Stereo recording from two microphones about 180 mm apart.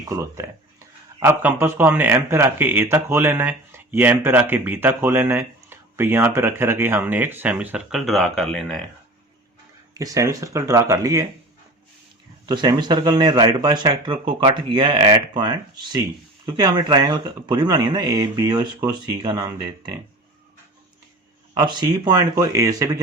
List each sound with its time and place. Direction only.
0.1 s a man's voice: 15° right (ahead or behind); by 8.8 s centre (ahead or behind)
9.9 s a man's voice: 20° right (ahead or behind)
12.5 s speech: 20° right (ahead or behind)
21.5 s speech: 25° right (ahead or behind)